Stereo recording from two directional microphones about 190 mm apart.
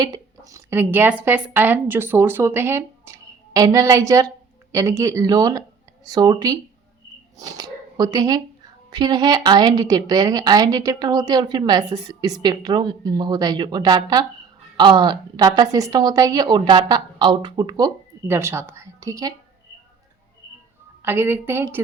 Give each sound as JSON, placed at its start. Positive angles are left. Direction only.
{"t": 0.0, "sound": "a woman's voice", "side_deg": -20}
{"t": 21.0, "sound": "speech", "side_deg": -10}